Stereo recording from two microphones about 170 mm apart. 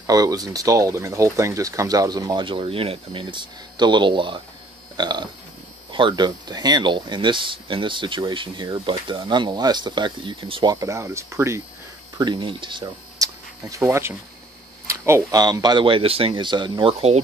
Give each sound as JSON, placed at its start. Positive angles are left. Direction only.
{"t": 0.0, "sound": "speech", "side_deg": -20}
{"t": 12.2, "sound": "speech", "side_deg": -25}